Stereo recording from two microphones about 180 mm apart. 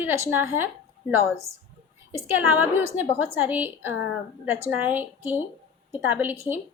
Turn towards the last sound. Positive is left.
turn(degrees=-10)  # may be behind; listen again after turning